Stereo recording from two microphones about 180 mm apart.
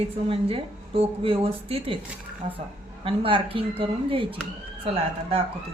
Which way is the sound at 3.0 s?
30° right (ahead or behind).